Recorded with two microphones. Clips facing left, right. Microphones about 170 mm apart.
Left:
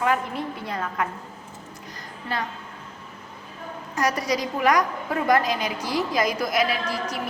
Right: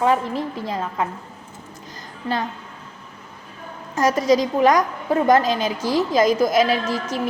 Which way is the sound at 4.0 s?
25° right (ahead or behind).